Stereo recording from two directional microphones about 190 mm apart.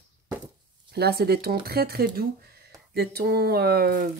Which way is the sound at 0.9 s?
55° right (ahead or behind).